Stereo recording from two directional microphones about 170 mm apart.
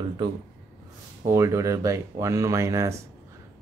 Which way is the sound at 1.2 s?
15° right (ahead or behind).